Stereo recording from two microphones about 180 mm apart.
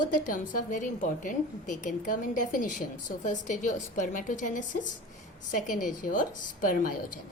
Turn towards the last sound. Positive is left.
turn(degrees=50)  # may be behind; listen again after turning